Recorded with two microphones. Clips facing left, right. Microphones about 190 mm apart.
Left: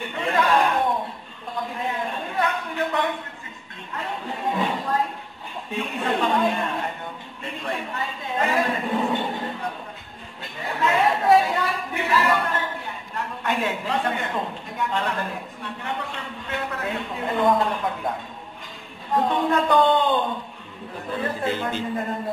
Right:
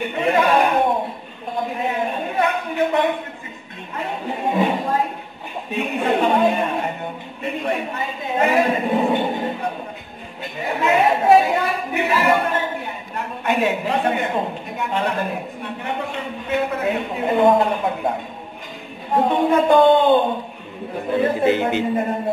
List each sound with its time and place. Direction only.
0.0 s a sound: 20° right (ahead or behind)
7.4 s a woman's voice: 20° right (ahead or behind)
19.1 s speech: 20° right (ahead or behind)